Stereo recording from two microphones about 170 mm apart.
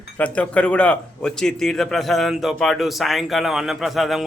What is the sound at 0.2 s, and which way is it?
A man's voice, 5° left (ahead or behind).